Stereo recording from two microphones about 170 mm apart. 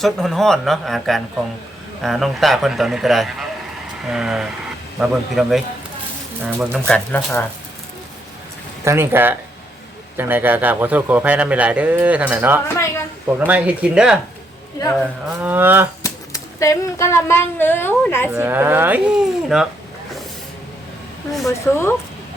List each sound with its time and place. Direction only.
0.0 s a man's voice: centre (ahead or behind)
8.8 s a man's voice: 15° right (ahead or behind)
12.6 s speech: 15° left (ahead or behind)
13.2 s a man's voice: 10° right (ahead or behind)
15.4 s a man's voice: 10° right (ahead or behind)
16.0 s speech: 20° left (ahead or behind)
18.3 s a man's voice: 10° right (ahead or behind)
21.4 s a woman's voice: 15° left (ahead or behind)